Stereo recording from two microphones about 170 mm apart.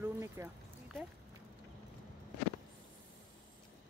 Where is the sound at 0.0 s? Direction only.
15° right (ahead or behind).